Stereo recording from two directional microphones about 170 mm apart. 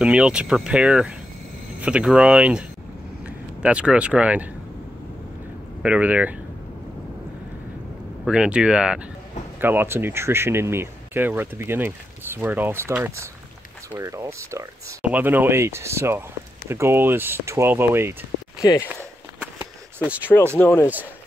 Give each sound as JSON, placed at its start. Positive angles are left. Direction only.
{"t": 0.0, "sound": "speech", "side_deg": -5}
{"t": 5.8, "sound": "speech", "side_deg": -10}
{"t": 8.3, "sound": "speech", "side_deg": -5}
{"t": 18.6, "sound": "speech", "side_deg": 20}
{"t": 19.4, "sound": "a sound", "side_deg": -10}
{"t": 20.5, "sound": "speech", "side_deg": 10}